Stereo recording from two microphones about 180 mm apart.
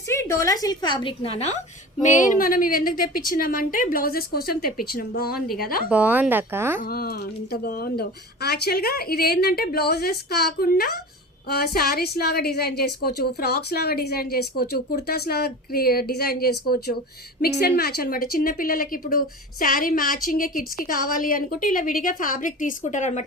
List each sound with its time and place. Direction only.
0.1 s a woman's voice: 15° left (ahead or behind); by 1.5 s 35° left (ahead or behind)
2.0 s a woman's voice: 45° left (ahead or behind)
5.9 s a woman's voice: 10° right (ahead or behind)
6.8 s a woman's voice: 60° left (ahead or behind); by 23.2 s 40° left (ahead or behind)